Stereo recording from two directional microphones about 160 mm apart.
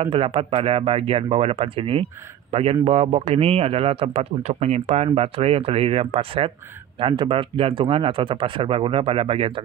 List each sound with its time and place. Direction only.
0.0 s speech: 35° right (ahead or behind)